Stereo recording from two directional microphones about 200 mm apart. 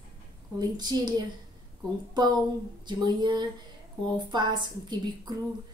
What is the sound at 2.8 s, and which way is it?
A woman's voice, 20° right (ahead or behind).